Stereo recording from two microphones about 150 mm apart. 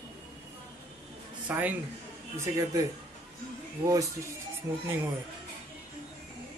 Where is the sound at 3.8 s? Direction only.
20° right (ahead or behind).